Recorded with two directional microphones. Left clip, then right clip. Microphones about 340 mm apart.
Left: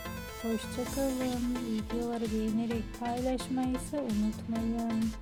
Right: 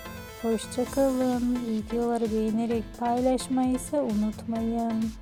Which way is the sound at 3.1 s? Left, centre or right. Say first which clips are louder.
Right 8 dB; centre.